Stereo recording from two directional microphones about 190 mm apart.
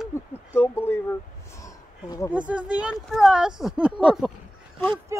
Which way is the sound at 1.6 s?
15° left (ahead or behind).